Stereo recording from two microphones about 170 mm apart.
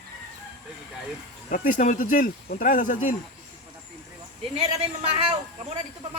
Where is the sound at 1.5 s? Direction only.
50° left (ahead or behind).